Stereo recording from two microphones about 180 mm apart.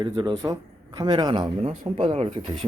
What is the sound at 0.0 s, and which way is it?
Speech, 25° right (ahead or behind).